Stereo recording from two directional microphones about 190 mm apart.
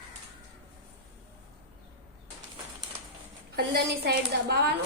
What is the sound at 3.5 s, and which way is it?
A woman's voice, 60° right (ahead or behind).